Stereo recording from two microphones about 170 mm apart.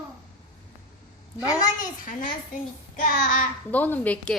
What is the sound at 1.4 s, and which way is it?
Speech, 20° left (ahead or behind).